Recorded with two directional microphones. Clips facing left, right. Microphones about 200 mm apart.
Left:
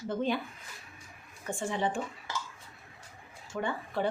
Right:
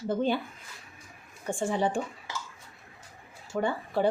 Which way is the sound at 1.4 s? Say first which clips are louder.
Right 4 dB; 30° right (ahead or behind).